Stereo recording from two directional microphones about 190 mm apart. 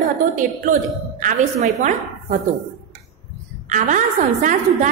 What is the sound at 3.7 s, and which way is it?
Speech, 40° right (ahead or behind).